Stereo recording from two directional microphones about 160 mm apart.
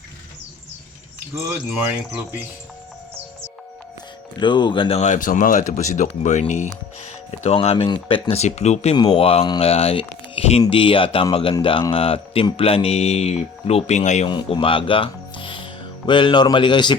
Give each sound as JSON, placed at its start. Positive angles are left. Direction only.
{"t": 1.5, "sound": "speech", "side_deg": -15}
{"t": 4.4, "sound": "speech", "side_deg": 30}
{"t": 4.9, "sound": "speech", "side_deg": 50}
{"t": 14.3, "sound": "speech", "side_deg": 30}